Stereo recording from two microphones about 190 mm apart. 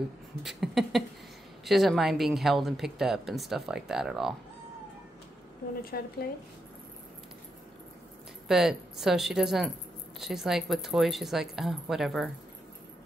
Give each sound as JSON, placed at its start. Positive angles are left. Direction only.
{"t": 0.4, "sound": "a sound", "side_deg": 0}
{"t": 1.6, "sound": "speech", "side_deg": 0}
{"t": 5.9, "sound": "speech", "side_deg": 50}
{"t": 8.5, "sound": "speech", "side_deg": 0}